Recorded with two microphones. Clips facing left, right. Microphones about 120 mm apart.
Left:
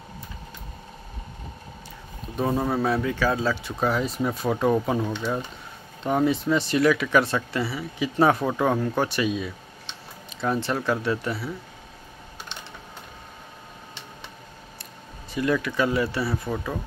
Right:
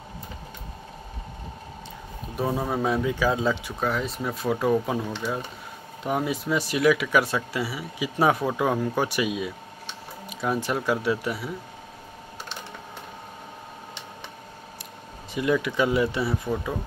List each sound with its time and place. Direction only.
2.3 s speech: 5° right (ahead or behind)
3.8 s speech: centre (ahead or behind)
15.3 s speech: 15° right (ahead or behind)